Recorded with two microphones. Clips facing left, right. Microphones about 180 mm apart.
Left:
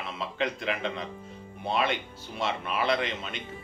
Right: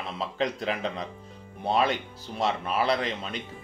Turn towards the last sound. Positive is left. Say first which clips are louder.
# right 1 dB
turn(degrees=-35)  # may be behind; listen again after turning